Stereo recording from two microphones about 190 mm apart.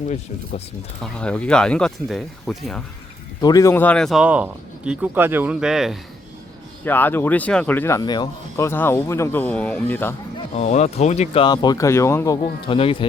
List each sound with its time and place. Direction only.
1.0 s speech: 5° left (ahead or behind)
3.4 s speech: 15° left (ahead or behind); by 6.0 s centre (ahead or behind)
6.8 s speech: 10° left (ahead or behind)
10.5 s speech: 35° left (ahead or behind)